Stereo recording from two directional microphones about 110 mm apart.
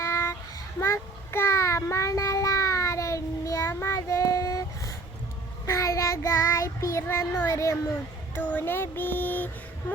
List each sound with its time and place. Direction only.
0.0 s child singing: 25° left (ahead or behind)
5.6 s child singing: 25° left (ahead or behind)
8.4 s a sound: 15° left (ahead or behind)